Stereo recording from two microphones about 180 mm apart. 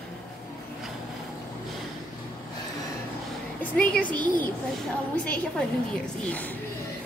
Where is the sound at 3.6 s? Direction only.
5° left (ahead or behind).